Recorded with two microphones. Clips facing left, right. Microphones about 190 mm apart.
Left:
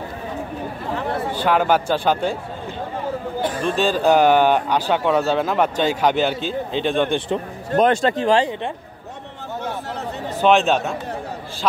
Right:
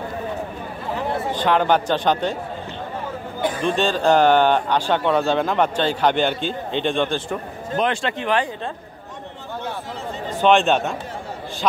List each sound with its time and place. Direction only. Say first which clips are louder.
1.3 s speech: even; 5° left (ahead or behind)
3.5 s speech: left 1 dB; 5° left (ahead or behind)
7.7 s speech: left 6 dB; 40° left (ahead or behind)
10.4 s a man's voice: even; centre (ahead or behind)